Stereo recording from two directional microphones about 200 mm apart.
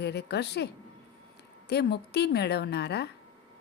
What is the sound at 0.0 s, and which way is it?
Speech, 55° left (ahead or behind).